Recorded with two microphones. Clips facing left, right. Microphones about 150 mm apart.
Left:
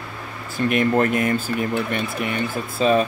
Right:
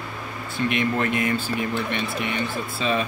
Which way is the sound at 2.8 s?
40° left (ahead or behind).